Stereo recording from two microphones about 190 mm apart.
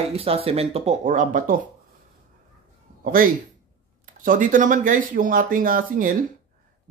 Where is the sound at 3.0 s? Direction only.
50° right (ahead or behind).